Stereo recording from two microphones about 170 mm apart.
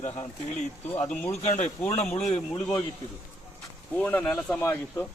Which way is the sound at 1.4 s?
45° left (ahead or behind).